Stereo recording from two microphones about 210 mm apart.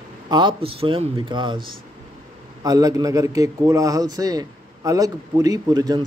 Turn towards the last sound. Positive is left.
turn(degrees=-20)  # may be behind; listen again after turning